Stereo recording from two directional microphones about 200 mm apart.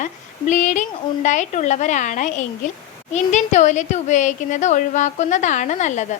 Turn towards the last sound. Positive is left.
turn(degrees=35)  # may be behind; listen again after turning